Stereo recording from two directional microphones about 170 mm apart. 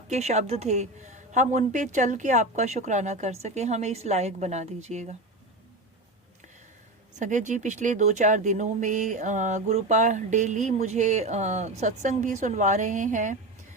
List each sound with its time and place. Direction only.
0.1 s speech: 40° right (ahead or behind)
7.2 s speech: 45° right (ahead or behind)